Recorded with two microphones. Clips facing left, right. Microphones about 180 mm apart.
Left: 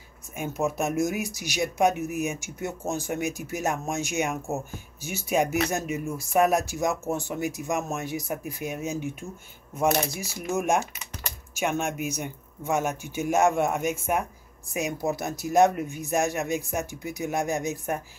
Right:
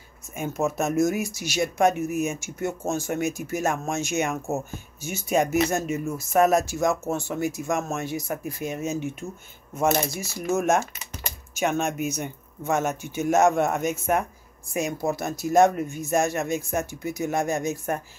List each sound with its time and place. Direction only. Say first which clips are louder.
0.4 s speech: right 2 dB; 15° left (ahead or behind)